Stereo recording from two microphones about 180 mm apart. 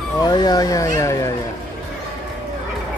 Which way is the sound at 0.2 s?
20° left (ahead or behind).